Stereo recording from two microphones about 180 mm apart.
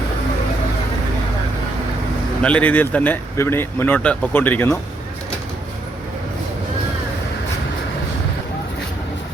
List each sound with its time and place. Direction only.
2.4 s speech: 5° left (ahead or behind)